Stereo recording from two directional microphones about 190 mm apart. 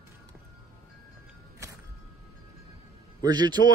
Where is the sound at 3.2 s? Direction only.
20° right (ahead or behind).